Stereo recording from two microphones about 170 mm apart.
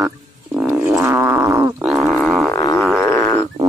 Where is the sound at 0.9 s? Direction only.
15° right (ahead or behind).